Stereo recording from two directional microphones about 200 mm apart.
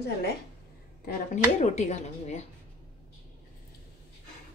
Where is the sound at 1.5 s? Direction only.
35° left (ahead or behind).